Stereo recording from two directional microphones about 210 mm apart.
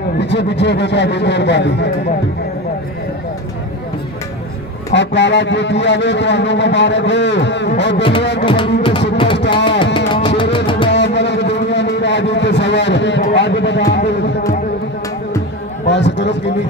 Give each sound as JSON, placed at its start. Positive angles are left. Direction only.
{"t": 0.2, "sound": "a man's voice", "side_deg": 55}
{"t": 4.9, "sound": "a man's voice", "side_deg": 60}
{"t": 8.5, "sound": "music", "side_deg": 25}
{"t": 10.9, "sound": "a sound", "side_deg": 55}
{"t": 15.9, "sound": "a man's voice", "side_deg": 55}